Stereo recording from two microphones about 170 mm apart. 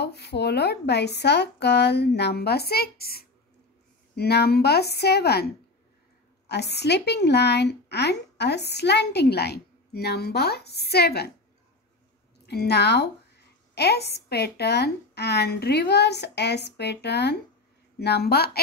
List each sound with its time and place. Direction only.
0.0 s speech: 75° left (ahead or behind)
6.5 s speech: 80° left
12.4 s speech: 75° left (ahead or behind)